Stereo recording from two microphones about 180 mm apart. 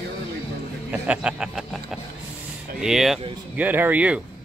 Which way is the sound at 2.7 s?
Centre (ahead or behind).